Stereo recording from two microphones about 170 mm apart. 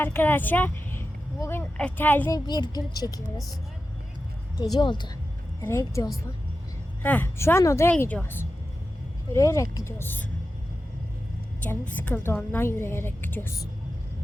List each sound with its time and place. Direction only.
0.0 s a woman's voice: 10° left (ahead or behind)
2.3 s speech: 25° left (ahead or behind)
4.6 s a woman's voice: 25° left (ahead or behind)
11.6 s a woman's voice: 10° left (ahead or behind)